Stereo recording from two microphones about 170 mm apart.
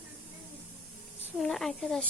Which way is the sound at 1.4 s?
Centre (ahead or behind).